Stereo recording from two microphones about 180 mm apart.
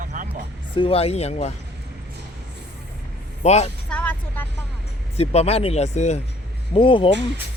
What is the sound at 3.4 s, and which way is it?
Speech, 35° left (ahead or behind).